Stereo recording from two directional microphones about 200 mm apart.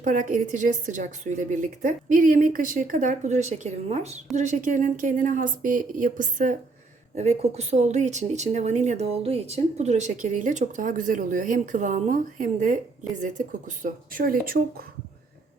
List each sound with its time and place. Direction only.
0.0 s a woman's voice: 40° right (ahead or behind)